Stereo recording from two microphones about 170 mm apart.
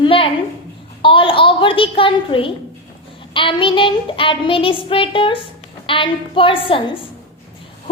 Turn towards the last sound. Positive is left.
turn(degrees=30)  # may be behind; listen again after turning